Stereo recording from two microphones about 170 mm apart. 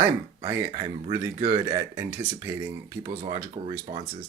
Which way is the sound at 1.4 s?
35° right (ahead or behind).